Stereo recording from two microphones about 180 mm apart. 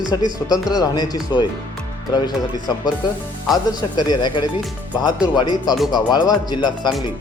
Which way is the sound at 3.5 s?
20° left (ahead or behind).